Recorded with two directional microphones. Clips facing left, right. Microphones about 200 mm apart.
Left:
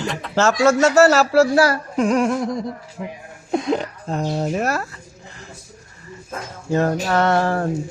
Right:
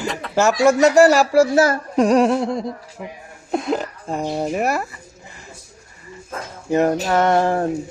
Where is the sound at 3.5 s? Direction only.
Centre (ahead or behind).